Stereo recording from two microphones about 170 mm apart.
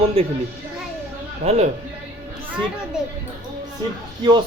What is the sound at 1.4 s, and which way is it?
Speech, 40° right (ahead or behind).